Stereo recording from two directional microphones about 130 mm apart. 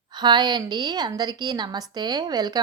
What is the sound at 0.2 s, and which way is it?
A woman's voice, 35° right (ahead or behind).